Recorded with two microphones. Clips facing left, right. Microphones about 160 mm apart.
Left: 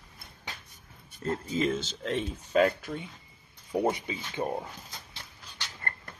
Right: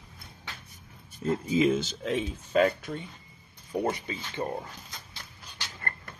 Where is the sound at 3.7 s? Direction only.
20° left (ahead or behind).